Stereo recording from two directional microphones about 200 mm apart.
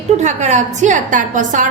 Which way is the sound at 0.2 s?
35° right (ahead or behind).